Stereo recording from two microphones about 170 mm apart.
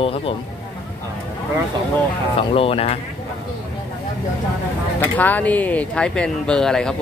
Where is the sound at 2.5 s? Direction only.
35° left (ahead or behind).